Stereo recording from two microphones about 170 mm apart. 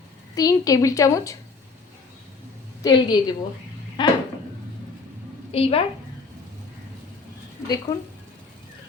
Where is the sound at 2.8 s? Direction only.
25° left (ahead or behind).